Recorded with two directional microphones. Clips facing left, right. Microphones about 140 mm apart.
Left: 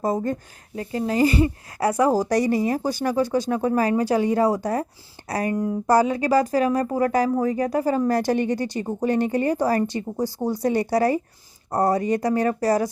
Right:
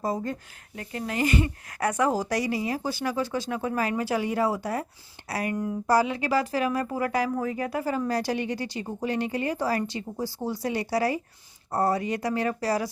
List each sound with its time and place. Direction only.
0.0 s speech: 45° left (ahead or behind)
0.8 s a woman's voice: 30° left (ahead or behind)
5.9 s speech: 45° left (ahead or behind)